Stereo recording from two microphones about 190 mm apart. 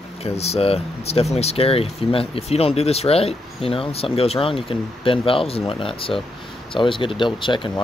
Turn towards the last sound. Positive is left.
turn(degrees=25)  # may be behind; listen again after turning